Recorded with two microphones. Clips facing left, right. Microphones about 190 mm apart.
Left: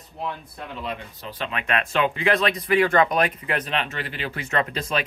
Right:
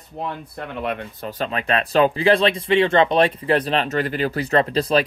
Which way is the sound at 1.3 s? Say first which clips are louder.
Right 4 dB; 40° right (ahead or behind).